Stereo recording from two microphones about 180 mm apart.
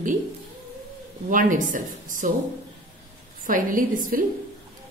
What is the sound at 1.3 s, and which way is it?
A woman's voice, 45° right (ahead or behind).